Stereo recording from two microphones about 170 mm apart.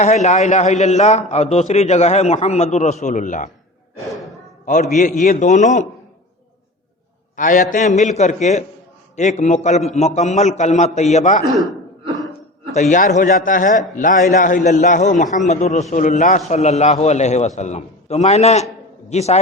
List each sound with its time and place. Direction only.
0.0 s a man's voice: 40° left (ahead or behind)
4.6 s a man's voice: 45° left (ahead or behind)
7.3 s a man's voice: 50° left (ahead or behind)
12.7 s a man's voice: 45° left (ahead or behind)